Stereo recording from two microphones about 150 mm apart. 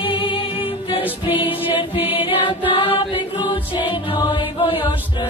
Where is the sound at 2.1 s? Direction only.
35° left (ahead or behind).